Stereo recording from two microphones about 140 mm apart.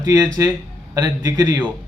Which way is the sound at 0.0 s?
25° right (ahead or behind).